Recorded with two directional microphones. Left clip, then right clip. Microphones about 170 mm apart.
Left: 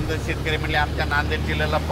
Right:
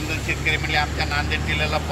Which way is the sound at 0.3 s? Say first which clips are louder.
Right 3 dB; 10° left (ahead or behind).